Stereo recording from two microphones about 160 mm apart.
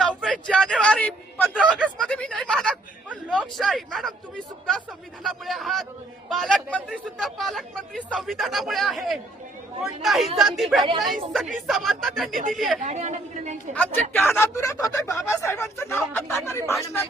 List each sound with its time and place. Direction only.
0.0 s a sound: 5° left (ahead or behind)
5.2 s speech: centre (ahead or behind)
12.8 s a woman's voice: 45° right (ahead or behind)
13.7 s speech: 10° left (ahead or behind)